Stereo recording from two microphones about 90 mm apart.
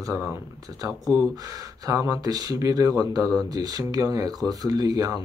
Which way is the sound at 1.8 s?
40° right (ahead or behind).